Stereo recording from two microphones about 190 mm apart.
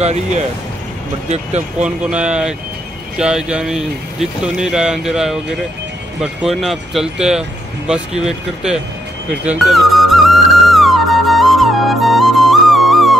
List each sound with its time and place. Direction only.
1.3 s speech: 35° right (ahead or behind)
2.0 s speech: 5° right (ahead or behind)
9.3 s music: 5° right (ahead or behind)